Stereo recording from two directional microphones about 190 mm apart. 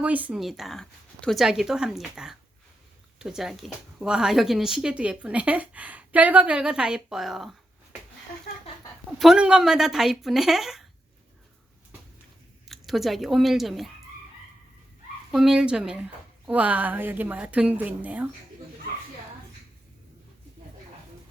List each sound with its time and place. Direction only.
0.0 s a woman's voice: 5° right (ahead or behind)
9.1 s a woman's voice: centre (ahead or behind)
12.6 s speech: centre (ahead or behind)
15.3 s a woman's voice: 5° right (ahead or behind)